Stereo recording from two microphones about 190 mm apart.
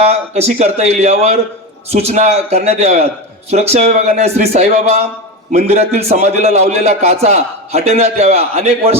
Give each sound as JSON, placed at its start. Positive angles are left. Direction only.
{"t": 0.0, "sound": "a man's voice", "side_deg": -35}